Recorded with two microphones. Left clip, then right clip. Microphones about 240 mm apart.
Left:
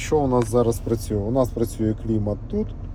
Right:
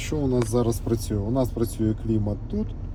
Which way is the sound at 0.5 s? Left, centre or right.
Centre.